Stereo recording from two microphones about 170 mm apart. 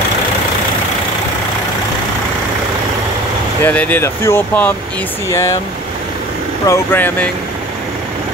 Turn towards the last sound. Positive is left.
turn(degrees=10)  # may be behind; listen again after turning